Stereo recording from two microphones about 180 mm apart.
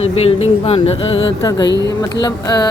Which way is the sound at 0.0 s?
35° left (ahead or behind).